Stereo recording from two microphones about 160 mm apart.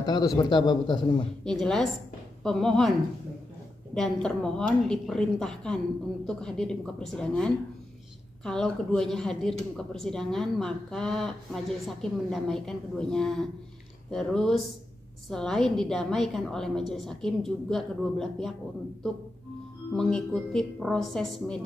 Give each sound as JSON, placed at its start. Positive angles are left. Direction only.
{"t": 0.0, "sound": "a man's voice", "side_deg": 25}
{"t": 1.4, "sound": "a woman's voice", "side_deg": 5}
{"t": 3.9, "sound": "a woman's voice", "side_deg": 5}
{"t": 20.0, "sound": "a woman's voice", "side_deg": 5}